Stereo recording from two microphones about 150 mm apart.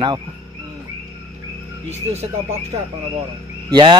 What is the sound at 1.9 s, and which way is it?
Speech, 45° right (ahead or behind).